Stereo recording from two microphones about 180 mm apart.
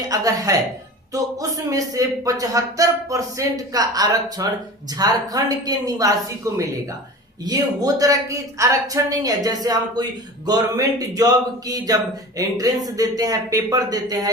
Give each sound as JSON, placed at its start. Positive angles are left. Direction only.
{"t": 0.1, "sound": "speech", "side_deg": -20}